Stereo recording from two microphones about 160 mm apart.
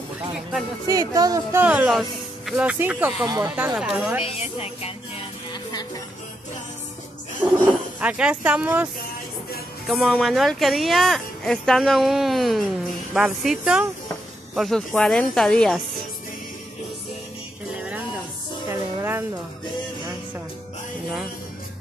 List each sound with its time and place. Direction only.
0.3 s speech: centre (ahead or behind)
0.8 s speech: 20° right (ahead or behind)
1.6 s speech: 10° right (ahead or behind)
4.2 s speech: 40° left (ahead or behind)
7.4 s speech: 10° right (ahead or behind)
9.8 s speech: centre (ahead or behind)
17.7 s music: 5° right (ahead or behind)